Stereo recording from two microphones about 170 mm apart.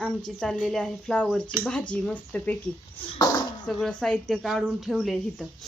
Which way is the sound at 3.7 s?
Centre (ahead or behind).